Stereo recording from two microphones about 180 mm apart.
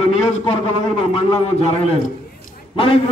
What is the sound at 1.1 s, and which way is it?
Speech, 35° left (ahead or behind).